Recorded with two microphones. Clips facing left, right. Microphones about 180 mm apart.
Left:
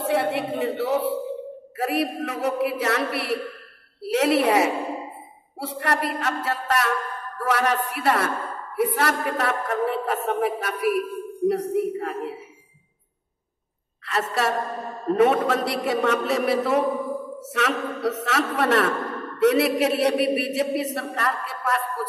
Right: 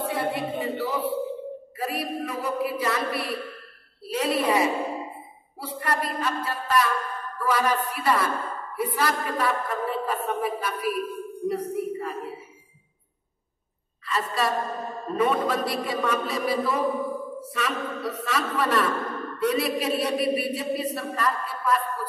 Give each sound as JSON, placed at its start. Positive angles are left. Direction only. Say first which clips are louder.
{"t": 0.0, "sound": "a woman's voice", "louder": "left 4 dB", "side_deg": 75}
{"t": 14.0, "sound": "a woman's voice", "louder": "left 2 dB", "side_deg": 75}